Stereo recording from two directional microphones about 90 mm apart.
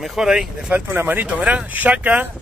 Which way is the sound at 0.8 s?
20° right (ahead or behind).